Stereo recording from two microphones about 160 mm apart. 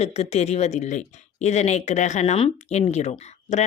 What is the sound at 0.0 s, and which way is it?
A woman's voice, 40° left (ahead or behind).